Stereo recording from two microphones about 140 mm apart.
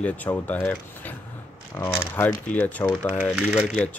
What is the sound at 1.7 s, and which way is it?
Speech, 15° left (ahead or behind).